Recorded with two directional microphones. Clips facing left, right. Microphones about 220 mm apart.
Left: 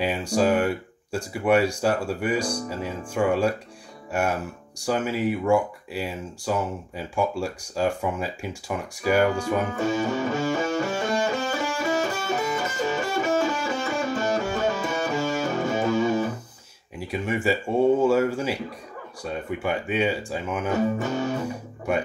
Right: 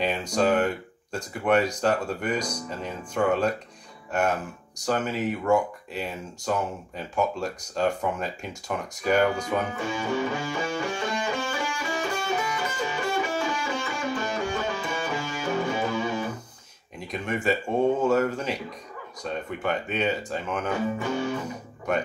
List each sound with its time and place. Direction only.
0.0 s speech: 10° left (ahead or behind)
9.8 s music: 45° left (ahead or behind)
17.1 s speech: 10° left (ahead or behind)
21.0 s music: 45° left (ahead or behind)
21.5 s speech: 10° left (ahead or behind)